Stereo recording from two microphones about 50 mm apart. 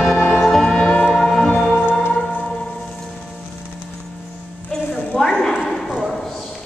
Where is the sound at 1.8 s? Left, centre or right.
Left.